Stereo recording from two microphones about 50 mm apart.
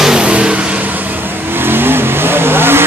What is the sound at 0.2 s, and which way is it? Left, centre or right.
Vehicle, right.